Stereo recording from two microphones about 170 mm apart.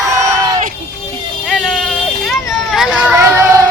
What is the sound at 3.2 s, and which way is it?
Child singing, 15° right (ahead or behind).